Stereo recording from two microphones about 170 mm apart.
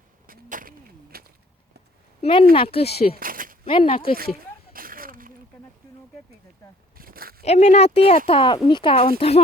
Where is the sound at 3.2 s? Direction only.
55° right (ahead or behind).